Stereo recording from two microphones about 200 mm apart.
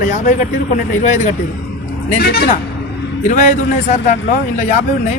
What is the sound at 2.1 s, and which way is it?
Speech, 55° left (ahead or behind).